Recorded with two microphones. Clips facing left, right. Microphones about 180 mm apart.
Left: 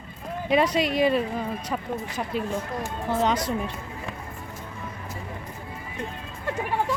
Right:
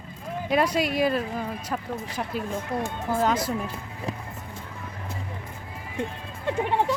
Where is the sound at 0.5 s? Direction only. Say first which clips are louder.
Left 2 dB; 5° right (ahead or behind).